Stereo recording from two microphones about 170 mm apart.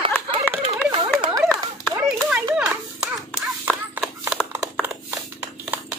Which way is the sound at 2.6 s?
5° right (ahead or behind).